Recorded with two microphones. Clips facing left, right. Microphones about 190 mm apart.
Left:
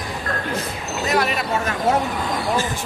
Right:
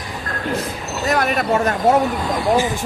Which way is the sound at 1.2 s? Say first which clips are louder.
Right 5 dB; 45° right (ahead or behind).